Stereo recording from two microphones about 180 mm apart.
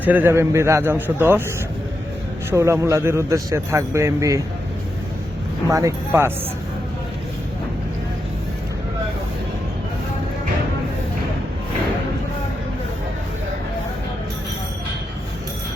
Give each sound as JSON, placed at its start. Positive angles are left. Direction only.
{"t": 0.0, "sound": "a man's voice", "side_deg": -10}
{"t": 2.5, "sound": "a man's voice", "side_deg": -15}
{"t": 5.6, "sound": "a man's voice", "side_deg": -15}